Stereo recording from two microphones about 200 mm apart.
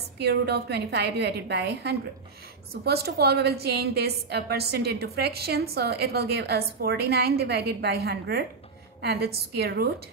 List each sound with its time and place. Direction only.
0.2 s a woman's voice: 55° right (ahead or behind)